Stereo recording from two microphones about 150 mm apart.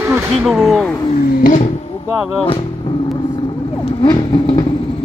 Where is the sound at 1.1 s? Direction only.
80° left; by 1.7 s 60° left (ahead or behind).